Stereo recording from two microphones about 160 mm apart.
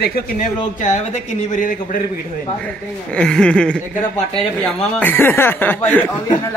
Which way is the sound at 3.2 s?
5° left (ahead or behind).